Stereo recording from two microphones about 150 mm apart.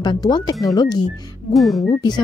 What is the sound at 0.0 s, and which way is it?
Speech, 25° left (ahead or behind).